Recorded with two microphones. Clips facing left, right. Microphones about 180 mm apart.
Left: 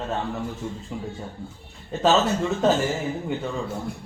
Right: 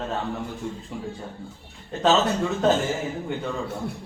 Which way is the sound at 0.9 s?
5° left (ahead or behind).